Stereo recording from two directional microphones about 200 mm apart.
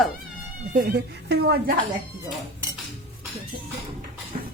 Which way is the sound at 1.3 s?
55° right (ahead or behind).